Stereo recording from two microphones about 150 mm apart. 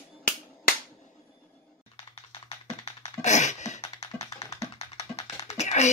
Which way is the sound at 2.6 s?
50° left (ahead or behind).